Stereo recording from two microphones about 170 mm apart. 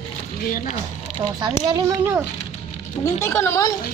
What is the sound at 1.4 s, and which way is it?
Speech, 20° right (ahead or behind).